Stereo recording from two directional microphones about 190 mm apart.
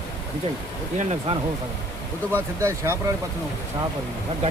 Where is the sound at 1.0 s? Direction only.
35° right (ahead or behind).